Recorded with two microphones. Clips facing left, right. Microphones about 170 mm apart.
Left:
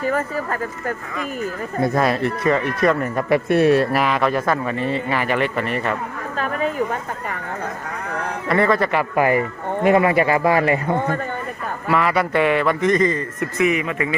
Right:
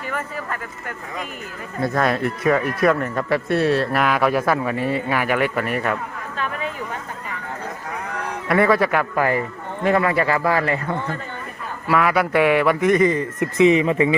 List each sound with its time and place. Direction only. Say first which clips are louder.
0.0 s speech: left 7 dB; 40° left (ahead or behind)
2.0 s speech: right 1 dB; centre (ahead or behind)
3.0 s speech: left 3 dB; 15° left (ahead or behind)
3.9 s speech: even; centre (ahead or behind)
6.3 s a sound: left 5 dB; 40° left (ahead or behind)
8.4 s speech: right 1 dB; 5° right (ahead or behind)
9.1 s speech: left 3 dB; 15° left (ahead or behind)
10.9 s a man's voice: left 5 dB; 50° left (ahead or behind)
11.9 s a man's voice: right 1 dB; centre (ahead or behind); by 14.2 s 25° right (ahead or behind)